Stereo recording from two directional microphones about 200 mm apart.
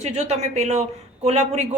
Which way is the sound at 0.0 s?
35° right (ahead or behind).